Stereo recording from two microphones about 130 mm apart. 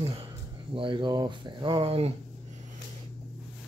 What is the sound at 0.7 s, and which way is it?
Speech, 40° right (ahead or behind).